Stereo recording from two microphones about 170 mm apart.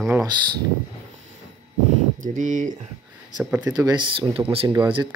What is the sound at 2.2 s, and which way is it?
Speech, 50° right (ahead or behind).